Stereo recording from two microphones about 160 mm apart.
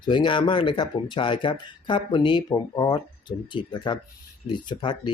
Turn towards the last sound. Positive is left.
turn(degrees=30)  # may be behind; listen again after turning